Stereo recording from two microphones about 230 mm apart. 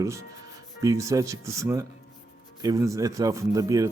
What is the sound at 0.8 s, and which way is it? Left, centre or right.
Speech, centre.